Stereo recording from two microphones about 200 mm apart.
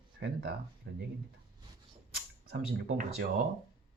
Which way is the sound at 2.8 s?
40° right (ahead or behind).